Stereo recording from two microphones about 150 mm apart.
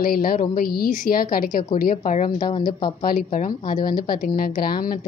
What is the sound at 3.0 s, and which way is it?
Speech, 65° left (ahead or behind).